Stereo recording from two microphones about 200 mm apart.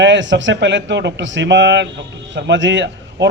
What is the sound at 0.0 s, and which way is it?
A man's voice, 65° right (ahead or behind).